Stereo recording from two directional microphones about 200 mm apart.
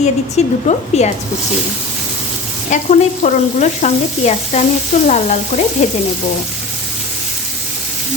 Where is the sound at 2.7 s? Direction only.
40° left (ahead or behind).